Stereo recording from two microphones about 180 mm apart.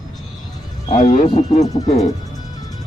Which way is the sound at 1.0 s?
40° left (ahead or behind).